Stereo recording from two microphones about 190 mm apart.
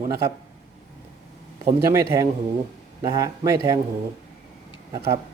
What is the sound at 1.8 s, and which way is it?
A man's voice, 15° right (ahead or behind).